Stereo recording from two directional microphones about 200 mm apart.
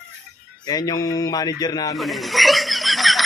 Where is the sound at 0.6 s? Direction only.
20° left (ahead or behind).